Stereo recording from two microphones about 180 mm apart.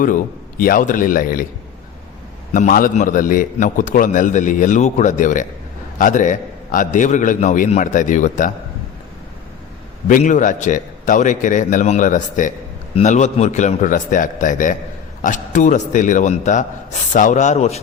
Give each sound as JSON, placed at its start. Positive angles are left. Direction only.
{"t": 0.0, "sound": "a man's voice", "side_deg": 50}
{"t": 2.5, "sound": "a man's voice", "side_deg": 50}
{"t": 10.1, "sound": "a man's voice", "side_deg": 45}